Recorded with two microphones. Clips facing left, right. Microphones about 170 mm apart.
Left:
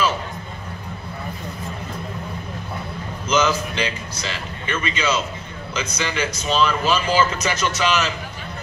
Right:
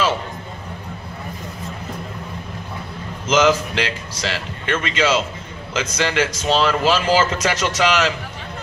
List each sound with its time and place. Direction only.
3.3 s a man's voice: 90° right